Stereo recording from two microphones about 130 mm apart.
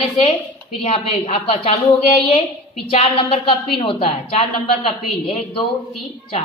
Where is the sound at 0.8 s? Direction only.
50° left (ahead or behind).